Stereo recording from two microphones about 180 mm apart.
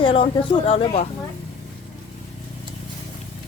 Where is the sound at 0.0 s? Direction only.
30° left (ahead or behind).